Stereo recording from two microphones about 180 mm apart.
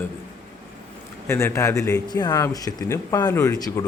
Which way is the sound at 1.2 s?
15° left (ahead or behind).